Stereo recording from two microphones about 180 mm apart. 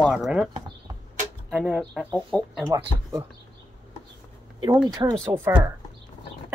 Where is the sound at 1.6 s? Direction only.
Centre (ahead or behind).